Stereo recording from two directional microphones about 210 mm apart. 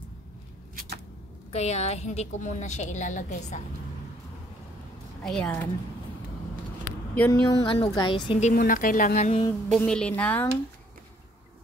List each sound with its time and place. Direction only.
1.5 s a woman's voice: 30° left (ahead or behind)
5.2 s speech: 5° left (ahead or behind)
7.2 s speech: 15° left (ahead or behind)
7.6 s a woman's voice: 25° left (ahead or behind)
9.7 s speech: 5° left (ahead or behind)